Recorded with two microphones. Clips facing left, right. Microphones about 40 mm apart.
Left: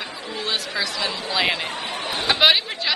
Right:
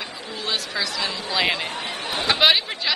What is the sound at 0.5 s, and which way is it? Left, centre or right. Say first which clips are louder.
Speech: even; centre.